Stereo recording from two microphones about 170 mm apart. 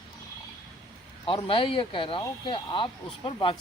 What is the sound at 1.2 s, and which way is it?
Speech, 30° left (ahead or behind).